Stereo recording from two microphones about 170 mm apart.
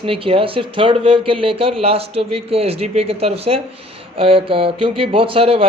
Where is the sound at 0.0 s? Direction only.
35° right (ahead or behind).